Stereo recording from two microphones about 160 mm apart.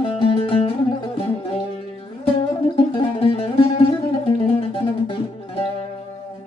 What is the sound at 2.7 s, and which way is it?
Music, 35° left (ahead or behind).